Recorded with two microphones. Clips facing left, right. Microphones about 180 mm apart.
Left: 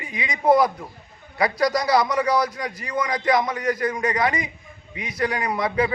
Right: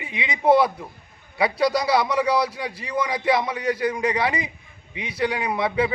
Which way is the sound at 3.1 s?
5° right (ahead or behind).